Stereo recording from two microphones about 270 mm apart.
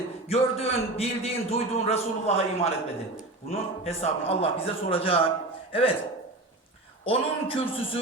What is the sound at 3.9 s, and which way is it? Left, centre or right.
A man's voice, left.